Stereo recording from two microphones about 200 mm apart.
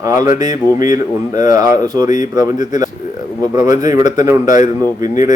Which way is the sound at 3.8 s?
20° right (ahead or behind).